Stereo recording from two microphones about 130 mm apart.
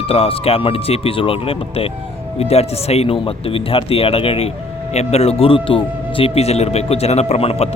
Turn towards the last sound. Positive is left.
turn(degrees=50)  # may be behind; listen again after turning